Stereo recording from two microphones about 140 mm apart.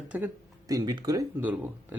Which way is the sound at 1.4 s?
10° right (ahead or behind).